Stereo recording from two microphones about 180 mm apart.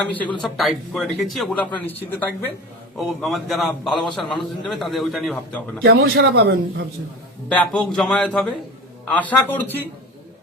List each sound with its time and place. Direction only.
0.4 s a man's voice: centre (ahead or behind)
3.1 s a man's voice: centre (ahead or behind)
5.8 s a man's voice: 60° right (ahead or behind)
7.5 s a man's voice: 5° left (ahead or behind)